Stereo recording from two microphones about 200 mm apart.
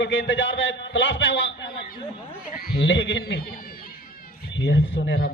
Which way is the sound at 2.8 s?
65° left (ahead or behind).